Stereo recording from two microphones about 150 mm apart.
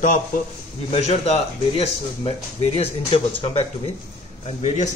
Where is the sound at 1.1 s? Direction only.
45° left (ahead or behind).